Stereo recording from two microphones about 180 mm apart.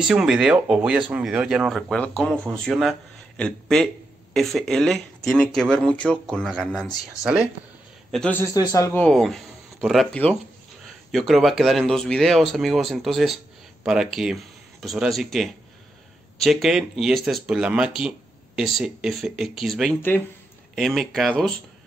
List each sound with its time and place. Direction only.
0.0 s speech: 5° right (ahead or behind)
7.2 s a man's voice: 20° left (ahead or behind)
8.1 s a man's voice: 5° left (ahead or behind)
9.0 s speech: centre (ahead or behind)